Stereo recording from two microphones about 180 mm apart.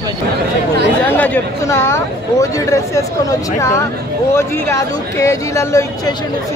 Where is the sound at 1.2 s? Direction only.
10° left (ahead or behind).